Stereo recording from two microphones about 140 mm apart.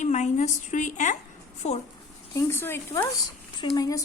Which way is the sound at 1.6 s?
50° left (ahead or behind).